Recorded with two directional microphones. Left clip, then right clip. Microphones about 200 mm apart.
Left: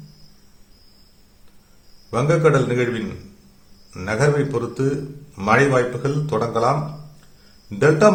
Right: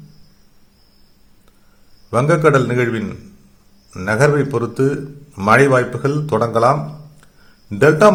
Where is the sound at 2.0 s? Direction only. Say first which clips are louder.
Right 4 dB; 30° right (ahead or behind).